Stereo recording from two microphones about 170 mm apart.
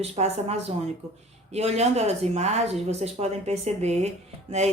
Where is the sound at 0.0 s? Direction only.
40° right (ahead or behind).